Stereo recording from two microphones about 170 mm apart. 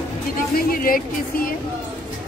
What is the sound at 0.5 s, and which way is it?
Music, 60° left (ahead or behind).